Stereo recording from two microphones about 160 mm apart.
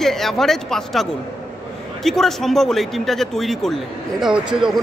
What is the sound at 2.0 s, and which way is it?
A man's voice, centre (ahead or behind).